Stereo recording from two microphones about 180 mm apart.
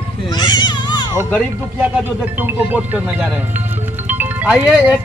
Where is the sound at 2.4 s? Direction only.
10° right (ahead or behind).